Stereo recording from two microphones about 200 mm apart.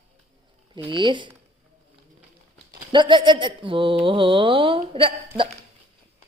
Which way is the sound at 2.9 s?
25° right (ahead or behind).